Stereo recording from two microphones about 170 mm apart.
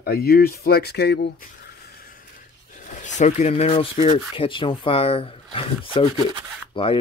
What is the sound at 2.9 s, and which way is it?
Speech, 45° left (ahead or behind).